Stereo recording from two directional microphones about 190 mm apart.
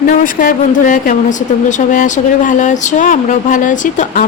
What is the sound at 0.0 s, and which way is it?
Speech, 45° left (ahead or behind).